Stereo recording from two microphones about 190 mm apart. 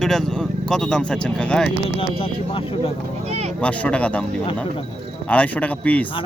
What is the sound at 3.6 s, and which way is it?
Speech, 5° left (ahead or behind).